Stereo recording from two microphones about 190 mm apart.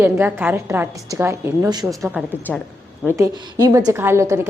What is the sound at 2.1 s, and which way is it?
A woman's voice, 10° right (ahead or behind).